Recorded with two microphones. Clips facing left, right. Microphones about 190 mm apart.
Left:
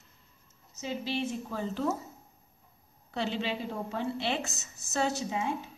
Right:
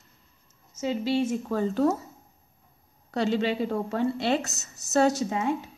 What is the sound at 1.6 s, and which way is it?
Speech, 45° right (ahead or behind).